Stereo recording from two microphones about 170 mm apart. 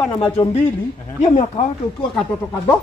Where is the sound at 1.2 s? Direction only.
40° left (ahead or behind).